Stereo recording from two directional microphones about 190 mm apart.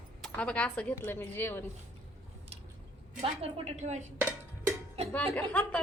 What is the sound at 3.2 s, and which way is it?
Speech, 30° right (ahead or behind).